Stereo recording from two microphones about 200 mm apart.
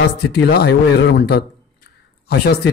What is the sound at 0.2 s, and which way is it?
A man's voice, 55° left (ahead or behind).